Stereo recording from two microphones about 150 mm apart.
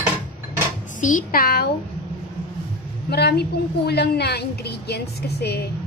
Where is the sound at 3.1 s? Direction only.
90° left.